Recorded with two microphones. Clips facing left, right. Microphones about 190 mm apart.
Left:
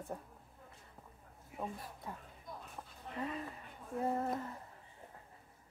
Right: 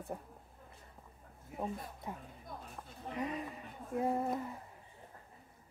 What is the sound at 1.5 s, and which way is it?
Speech, 15° right (ahead or behind).